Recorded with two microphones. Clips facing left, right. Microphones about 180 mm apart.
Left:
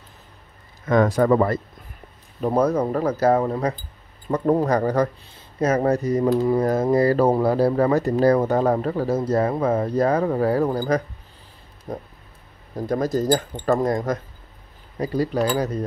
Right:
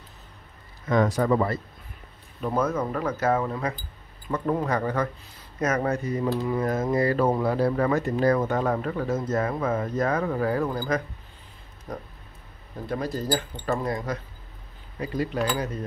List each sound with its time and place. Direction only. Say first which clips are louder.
0.8 s speech: left 5 dB; 50° left (ahead or behind)
2.4 s speech: left 6 dB; 35° left (ahead or behind)
11.9 s speech: left 4 dB; 30° left (ahead or behind)
12.7 s speech: left 7 dB; 40° left (ahead or behind)